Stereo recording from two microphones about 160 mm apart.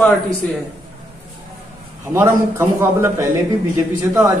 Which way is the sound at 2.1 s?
15° right (ahead or behind).